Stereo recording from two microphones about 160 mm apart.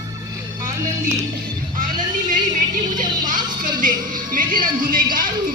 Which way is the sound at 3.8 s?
55° right (ahead or behind).